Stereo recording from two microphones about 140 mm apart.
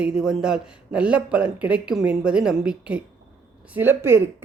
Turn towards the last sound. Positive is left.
turn(degrees=-20)  # may be behind; listen again after turning